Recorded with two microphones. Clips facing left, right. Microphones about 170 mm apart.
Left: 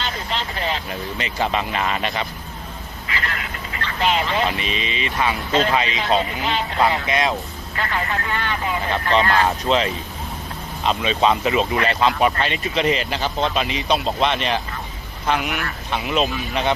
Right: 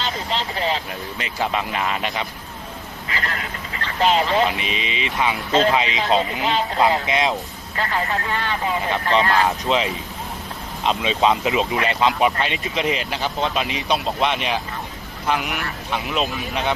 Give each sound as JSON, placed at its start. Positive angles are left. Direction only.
{"t": 0.0, "sound": "vehicle", "side_deg": -30}
{"t": 0.9, "sound": "speech", "side_deg": -5}
{"t": 3.1, "sound": "vehicle", "side_deg": -35}
{"t": 4.4, "sound": "speech", "side_deg": -15}
{"t": 5.5, "sound": "speech", "side_deg": -35}
{"t": 5.7, "sound": "speech", "side_deg": -20}
{"t": 6.4, "sound": "speech", "side_deg": -35}
{"t": 7.1, "sound": "speech", "side_deg": -20}
{"t": 7.8, "sound": "speech", "side_deg": -35}
{"t": 8.9, "sound": "speech", "side_deg": -15}